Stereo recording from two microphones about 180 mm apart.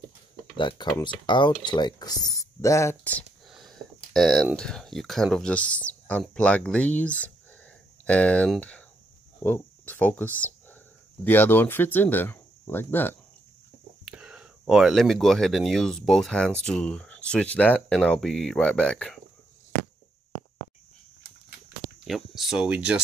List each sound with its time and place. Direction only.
0.6 s speech: 25° left (ahead or behind)
14.0 s whispering: 5° right (ahead or behind)
14.6 s speech: centre (ahead or behind)
22.0 s speech: centre (ahead or behind)